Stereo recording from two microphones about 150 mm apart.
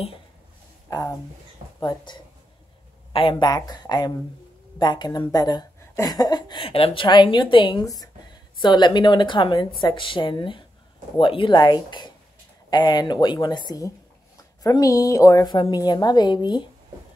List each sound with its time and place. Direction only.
0.8 s a woman's voice: 25° left (ahead or behind)